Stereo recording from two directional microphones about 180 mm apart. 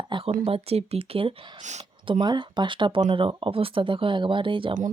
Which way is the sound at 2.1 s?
25° right (ahead or behind).